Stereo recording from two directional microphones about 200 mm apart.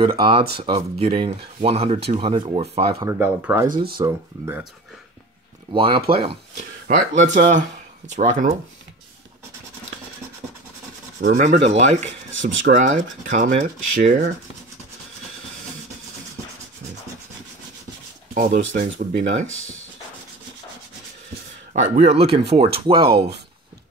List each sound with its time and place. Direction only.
0.0 s speech: 25° right (ahead or behind)
2.9 s speech: 15° right (ahead or behind)
3.6 s speech: 45° right (ahead or behind)
4.0 s speech: 10° right (ahead or behind)
5.7 s speech: 25° right (ahead or behind)
6.9 s speech: 45° right (ahead or behind)
11.3 s speech: 35° right (ahead or behind)
18.3 s speech: 40° right (ahead or behind)
21.7 s speech: 35° right (ahead or behind)